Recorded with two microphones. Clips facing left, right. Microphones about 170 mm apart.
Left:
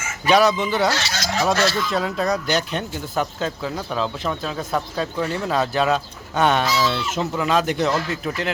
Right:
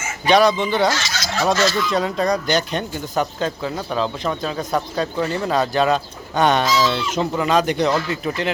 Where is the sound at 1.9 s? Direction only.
5° left (ahead or behind).